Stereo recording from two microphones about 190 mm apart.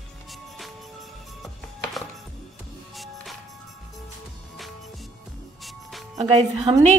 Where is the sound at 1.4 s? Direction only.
Centre (ahead or behind).